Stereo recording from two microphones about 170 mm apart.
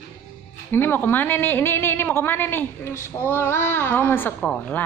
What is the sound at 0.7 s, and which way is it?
A woman's voice, 10° left (ahead or behind).